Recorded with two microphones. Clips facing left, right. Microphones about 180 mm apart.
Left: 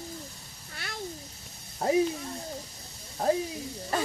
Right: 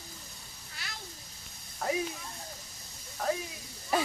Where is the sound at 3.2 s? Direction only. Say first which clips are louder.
Left 6 dB; 25° left (ahead or behind).